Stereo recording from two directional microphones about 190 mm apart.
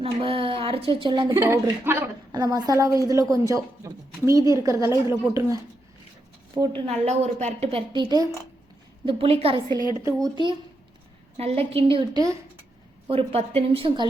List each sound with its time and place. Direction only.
0.0 s a woman's voice: 30° right (ahead or behind)
9.6 s a woman's voice: 20° left (ahead or behind)
10.2 s a woman's voice: 25° right (ahead or behind)
13.1 s a woman's voice: 30° right (ahead or behind)